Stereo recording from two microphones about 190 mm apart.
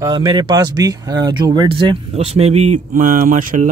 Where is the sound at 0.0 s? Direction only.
25° right (ahead or behind).